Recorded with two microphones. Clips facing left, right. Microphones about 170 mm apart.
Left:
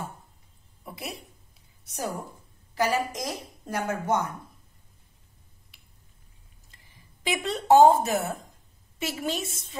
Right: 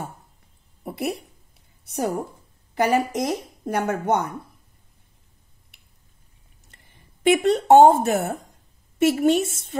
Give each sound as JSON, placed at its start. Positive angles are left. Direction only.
{"t": 0.8, "sound": "a sound", "side_deg": -65}
{"t": 1.9, "sound": "speech", "side_deg": -55}
{"t": 6.7, "sound": "speech", "side_deg": -60}